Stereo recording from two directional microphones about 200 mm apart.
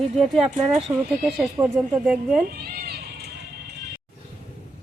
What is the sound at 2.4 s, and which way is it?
Cat, 50° right (ahead or behind).